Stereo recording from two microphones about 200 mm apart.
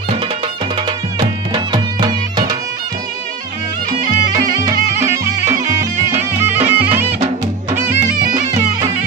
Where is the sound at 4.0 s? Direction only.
40° right (ahead or behind).